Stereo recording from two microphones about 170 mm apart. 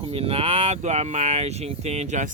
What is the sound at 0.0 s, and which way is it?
Speech, 35° right (ahead or behind).